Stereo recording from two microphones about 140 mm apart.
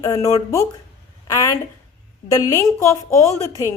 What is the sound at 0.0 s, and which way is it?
A woman's voice, 20° left (ahead or behind).